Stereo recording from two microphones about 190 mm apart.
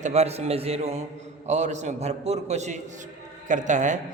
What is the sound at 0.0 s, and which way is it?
A man's voice, 35° right (ahead or behind).